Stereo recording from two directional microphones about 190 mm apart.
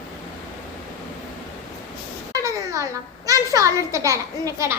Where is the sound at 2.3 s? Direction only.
20° right (ahead or behind).